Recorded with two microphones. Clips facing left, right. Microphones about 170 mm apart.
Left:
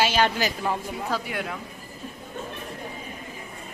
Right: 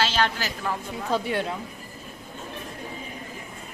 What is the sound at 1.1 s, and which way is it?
Speech, 25° right (ahead or behind).